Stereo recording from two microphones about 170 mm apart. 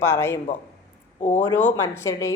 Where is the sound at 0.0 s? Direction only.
15° left (ahead or behind).